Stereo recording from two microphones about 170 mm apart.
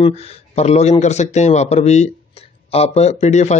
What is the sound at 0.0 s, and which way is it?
Speech, 40° left (ahead or behind).